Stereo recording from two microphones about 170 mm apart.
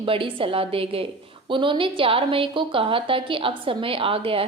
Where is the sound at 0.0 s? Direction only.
30° right (ahead or behind).